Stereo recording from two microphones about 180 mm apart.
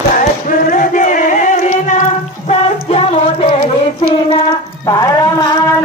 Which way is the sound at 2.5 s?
35° left (ahead or behind).